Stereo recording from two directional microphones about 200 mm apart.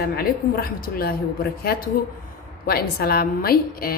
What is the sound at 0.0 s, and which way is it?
A woman's voice, 50° left (ahead or behind).